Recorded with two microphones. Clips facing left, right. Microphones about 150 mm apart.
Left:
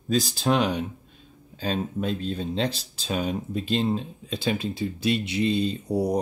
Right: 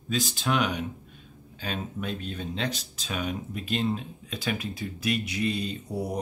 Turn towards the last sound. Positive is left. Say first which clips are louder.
# left 7 dB
turn(degrees=35)  # may be behind; listen again after turning